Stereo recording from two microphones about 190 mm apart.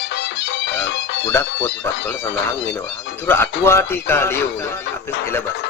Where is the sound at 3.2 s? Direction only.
10° left (ahead or behind).